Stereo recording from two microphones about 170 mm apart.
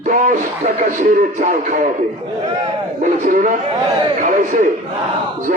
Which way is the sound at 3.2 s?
50° right (ahead or behind).